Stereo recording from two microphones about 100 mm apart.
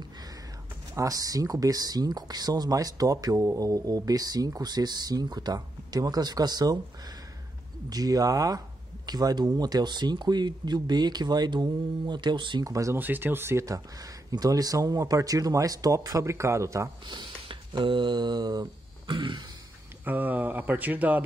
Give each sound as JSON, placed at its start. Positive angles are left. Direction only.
{"t": 0.9, "sound": "speech", "side_deg": -35}
{"t": 7.9, "sound": "speech", "side_deg": -40}
{"t": 12.6, "sound": "speech", "side_deg": -35}
{"t": 12.9, "sound": "speech", "side_deg": -20}
{"t": 14.3, "sound": "speech", "side_deg": -40}
{"t": 17.5, "sound": "a sound", "side_deg": -55}
{"t": 20.1, "sound": "speech", "side_deg": -15}